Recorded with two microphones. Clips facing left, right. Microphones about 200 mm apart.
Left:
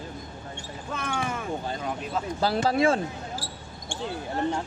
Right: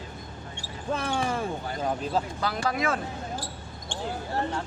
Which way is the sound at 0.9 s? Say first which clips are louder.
Right 3 dB; 35° right (ahead or behind).